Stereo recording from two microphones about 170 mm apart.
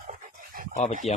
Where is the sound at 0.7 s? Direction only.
45° left (ahead or behind).